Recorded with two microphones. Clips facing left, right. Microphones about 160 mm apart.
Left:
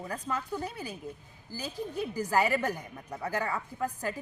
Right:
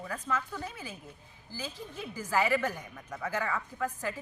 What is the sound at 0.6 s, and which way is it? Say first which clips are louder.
A woman's voice: left 4 dB; 40° left (ahead or behind).